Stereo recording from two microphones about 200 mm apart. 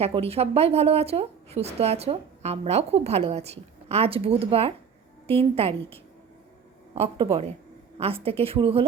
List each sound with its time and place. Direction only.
0.0 s a woman's voice: 30° right (ahead or behind)